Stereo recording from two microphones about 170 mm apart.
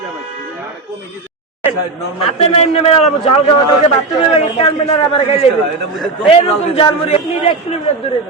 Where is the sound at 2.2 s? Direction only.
35° left (ahead or behind).